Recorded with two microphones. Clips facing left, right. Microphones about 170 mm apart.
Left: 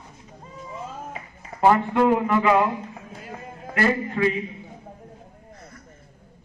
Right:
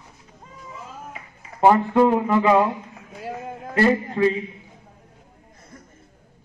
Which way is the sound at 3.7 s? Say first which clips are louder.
Right 3 dB; 30° right (ahead or behind).